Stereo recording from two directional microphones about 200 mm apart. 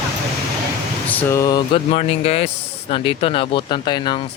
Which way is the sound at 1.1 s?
15° left (ahead or behind).